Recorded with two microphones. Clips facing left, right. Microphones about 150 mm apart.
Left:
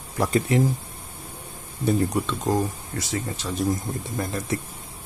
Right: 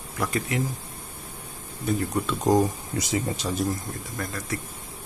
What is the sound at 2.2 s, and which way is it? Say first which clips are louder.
Speech: right 3 dB; 10° right (ahead or behind).